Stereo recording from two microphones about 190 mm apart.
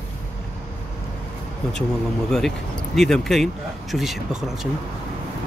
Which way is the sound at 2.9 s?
Centre (ahead or behind).